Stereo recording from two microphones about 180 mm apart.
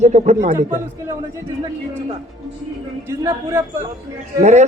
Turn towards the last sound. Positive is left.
turn(degrees=-40)  # may be behind; listen again after turning